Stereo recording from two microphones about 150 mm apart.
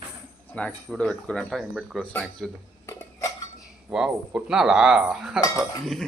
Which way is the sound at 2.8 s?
20° left (ahead or behind).